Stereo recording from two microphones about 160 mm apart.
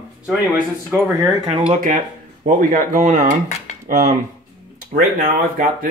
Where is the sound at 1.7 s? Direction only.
55° right (ahead or behind).